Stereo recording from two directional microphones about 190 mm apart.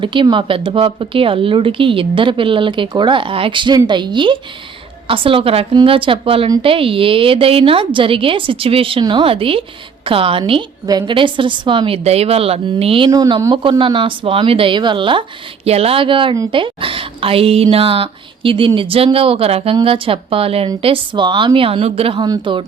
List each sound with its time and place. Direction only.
0.0 s a woman's voice: 25° right (ahead or behind)
13.1 s a woman's voice: 20° right (ahead or behind)